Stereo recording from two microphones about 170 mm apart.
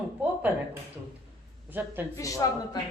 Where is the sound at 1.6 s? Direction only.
10° right (ahead or behind).